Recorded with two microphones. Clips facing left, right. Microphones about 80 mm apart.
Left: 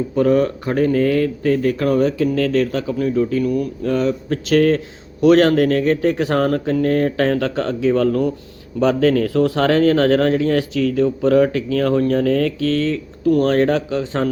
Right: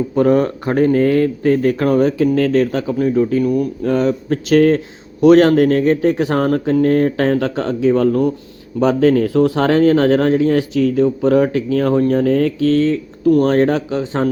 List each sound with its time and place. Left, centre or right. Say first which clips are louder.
0.2 s speech: right 2 dB; right
3.8 s speech: right 2 dB; right